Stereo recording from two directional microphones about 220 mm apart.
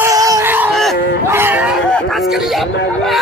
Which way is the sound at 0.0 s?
15° right (ahead or behind).